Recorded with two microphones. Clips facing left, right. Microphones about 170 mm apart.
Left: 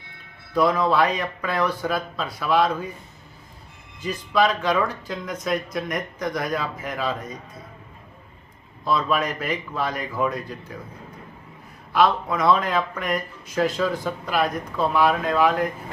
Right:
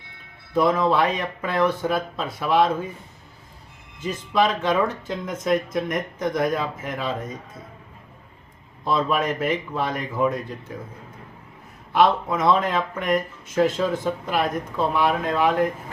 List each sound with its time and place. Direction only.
0.5 s speech: 25° right (ahead or behind)
4.0 s speech: 25° right (ahead or behind)
8.8 s speech: 25° right (ahead or behind)
11.9 s speech: 25° right (ahead or behind)